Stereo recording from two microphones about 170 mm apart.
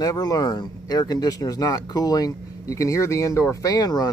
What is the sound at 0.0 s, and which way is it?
Speech, 20° left (ahead or behind).